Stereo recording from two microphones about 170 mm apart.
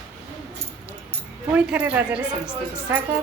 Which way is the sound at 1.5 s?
5° right (ahead or behind).